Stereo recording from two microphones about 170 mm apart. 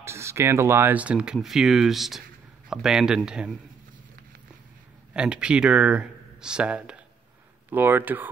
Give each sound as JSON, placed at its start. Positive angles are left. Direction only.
{"t": 0.0, "sound": "speech", "side_deg": -15}
{"t": 5.1, "sound": "speech", "side_deg": -5}